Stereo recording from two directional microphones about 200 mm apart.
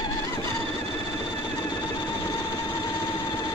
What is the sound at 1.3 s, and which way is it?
Vehicle, 20° left (ahead or behind).